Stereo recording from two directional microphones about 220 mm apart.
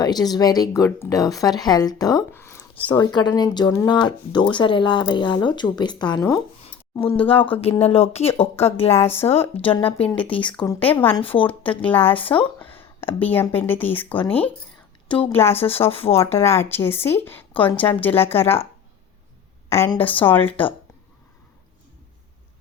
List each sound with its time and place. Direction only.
0.0 s speech: 20° left (ahead or behind)
9.0 s a woman's voice: 10° left (ahead or behind)
11.2 s speech: 25° left (ahead or behind)
11.4 s a woman's voice: 5° left (ahead or behind)
15.0 s a woman's voice: 20° left (ahead or behind)
15.3 s a woman's voice: 10° left (ahead or behind)
19.7 s a woman's voice: 10° left (ahead or behind)